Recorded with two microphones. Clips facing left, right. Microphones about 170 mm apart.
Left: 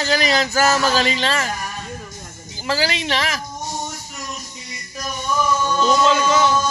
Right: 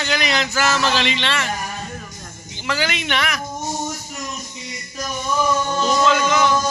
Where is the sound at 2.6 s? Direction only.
35° left (ahead or behind).